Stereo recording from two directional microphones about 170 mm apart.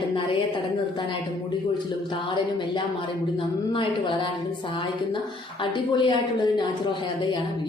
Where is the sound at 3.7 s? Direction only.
30° left (ahead or behind).